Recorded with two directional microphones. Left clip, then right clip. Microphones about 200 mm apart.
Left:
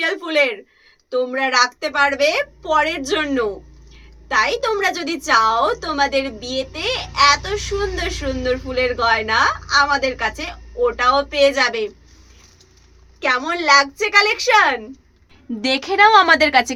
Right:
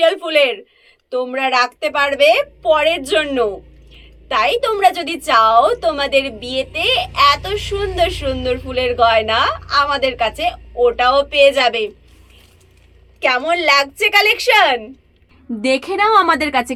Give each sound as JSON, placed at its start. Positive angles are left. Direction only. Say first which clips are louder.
{"t": 0.0, "sound": "a woman's voice", "louder": "right 5 dB", "side_deg": 20}
{"t": 13.1, "sound": "a woman's voice", "louder": "right 4 dB", "side_deg": 15}
{"t": 15.6, "sound": "a woman's voice", "louder": "left 1 dB", "side_deg": -10}